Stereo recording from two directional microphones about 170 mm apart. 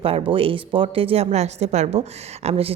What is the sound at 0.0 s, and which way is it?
A woman's voice, 35° right (ahead or behind).